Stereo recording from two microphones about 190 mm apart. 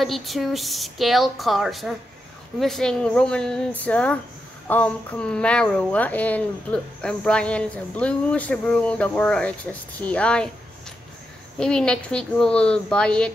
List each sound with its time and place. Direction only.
0.0 s a woman's voice: centre (ahead or behind)
11.5 s a woman's voice: 5° left (ahead or behind)